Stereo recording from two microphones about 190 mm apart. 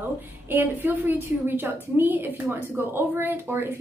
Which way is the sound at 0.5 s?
10° right (ahead or behind).